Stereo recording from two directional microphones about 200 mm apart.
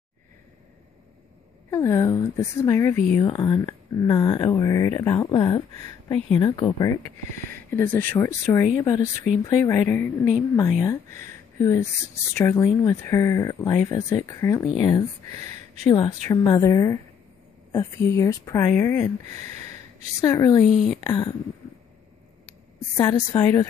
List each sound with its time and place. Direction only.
1.7 s speech: 15° left (ahead or behind)
15.3 s a sound: 35° right (ahead or behind)
15.9 s speech: 20° left (ahead or behind)
19.2 s speech: 35° right (ahead or behind)
20.2 s speech: 15° left (ahead or behind)
20.7 s speech: centre (ahead or behind)
21.1 s speech: 20° left (ahead or behind)
22.9 s speech: 20° left (ahead or behind)